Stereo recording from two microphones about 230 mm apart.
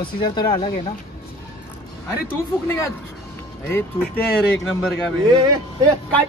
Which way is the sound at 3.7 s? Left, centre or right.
Centre.